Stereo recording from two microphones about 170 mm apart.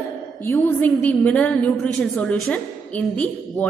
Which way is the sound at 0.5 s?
15° left (ahead or behind).